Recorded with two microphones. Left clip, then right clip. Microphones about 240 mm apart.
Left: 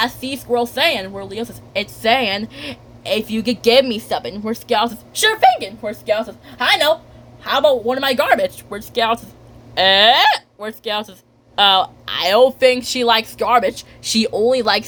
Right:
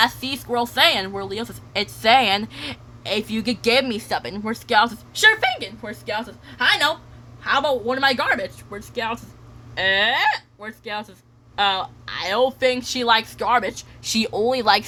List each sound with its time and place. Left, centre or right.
0.0 s a woman's voice: centre